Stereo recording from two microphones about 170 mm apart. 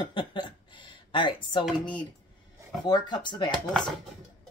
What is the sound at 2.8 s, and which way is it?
Speech, 25° left (ahead or behind).